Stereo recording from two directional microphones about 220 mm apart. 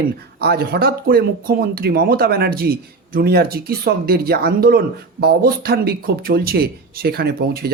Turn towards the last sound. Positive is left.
turn(degrees=-45)  # may be behind; listen again after turning